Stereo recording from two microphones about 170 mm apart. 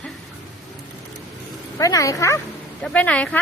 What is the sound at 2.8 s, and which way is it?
Speech, 5° left (ahead or behind).